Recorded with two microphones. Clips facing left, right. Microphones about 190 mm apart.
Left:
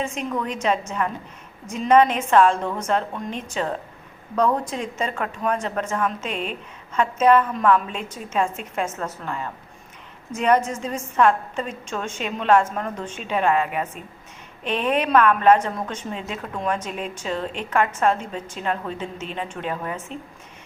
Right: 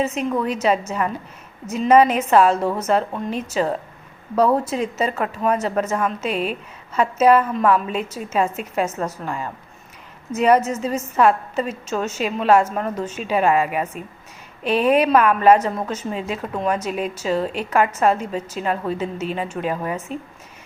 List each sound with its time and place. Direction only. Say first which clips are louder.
0.0 s a woman's voice: right 5 dB; 5° right (ahead or behind)